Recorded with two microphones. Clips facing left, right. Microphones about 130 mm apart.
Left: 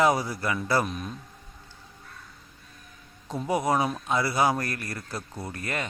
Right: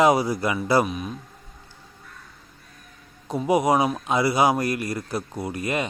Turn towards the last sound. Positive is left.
turn(degrees=-15)  # may be behind; listen again after turning